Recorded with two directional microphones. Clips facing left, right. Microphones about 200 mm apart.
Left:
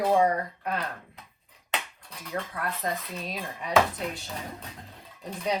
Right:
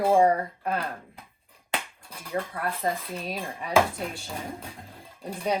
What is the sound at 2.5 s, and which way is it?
Speech, 30° right (ahead or behind).